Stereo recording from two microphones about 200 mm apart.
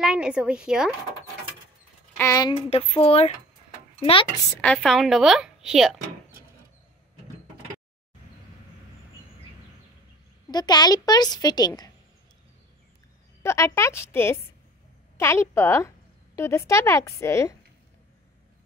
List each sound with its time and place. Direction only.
0.0 s a woman's voice: 5° right (ahead or behind)
2.1 s a woman's voice: 15° left (ahead or behind)
4.6 s a woman's voice: 5° left (ahead or behind)
10.5 s a woman's voice: 20° left (ahead or behind)
13.4 s a woman's voice: 15° left (ahead or behind)